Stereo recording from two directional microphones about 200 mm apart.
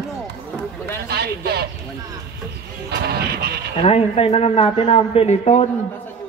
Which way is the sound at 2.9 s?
55° right (ahead or behind).